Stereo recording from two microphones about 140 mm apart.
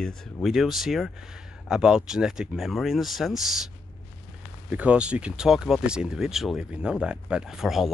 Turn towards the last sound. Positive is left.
turn(degrees=0)  # may be behind; listen again after turning